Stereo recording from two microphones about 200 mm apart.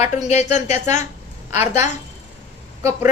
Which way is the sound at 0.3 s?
35° left (ahead or behind).